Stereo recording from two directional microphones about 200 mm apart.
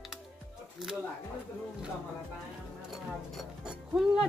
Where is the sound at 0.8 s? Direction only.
Centre (ahead or behind).